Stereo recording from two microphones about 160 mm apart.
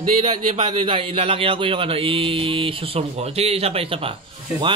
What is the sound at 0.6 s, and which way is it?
Speech, 40° right (ahead or behind).